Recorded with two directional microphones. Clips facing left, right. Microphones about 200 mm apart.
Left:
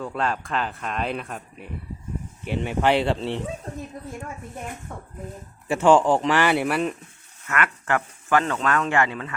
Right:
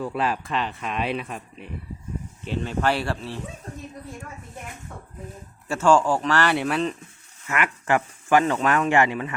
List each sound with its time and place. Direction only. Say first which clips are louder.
0.0 s speech: right 1 dB; 5° right (ahead or behind)
2.4 s speech: left 2 dB; 15° left (ahead or behind)
5.6 s speech: left 2 dB; 15° left (ahead or behind)
7.4 s speech: even; 10° right (ahead or behind)